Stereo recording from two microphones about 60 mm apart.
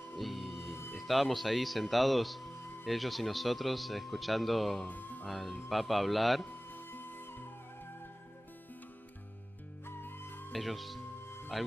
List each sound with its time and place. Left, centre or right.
0.2 s music: centre
0.9 s speech: centre
4.8 s speech: left
5.2 s speech: centre
6.5 s flute: left
9.8 s music: left
10.5 s speech: centre
11.2 s music: left